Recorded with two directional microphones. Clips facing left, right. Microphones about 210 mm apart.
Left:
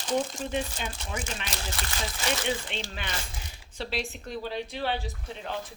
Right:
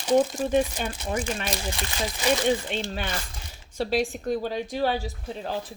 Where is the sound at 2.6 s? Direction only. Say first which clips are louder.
Right 6 dB; 45° right (ahead or behind).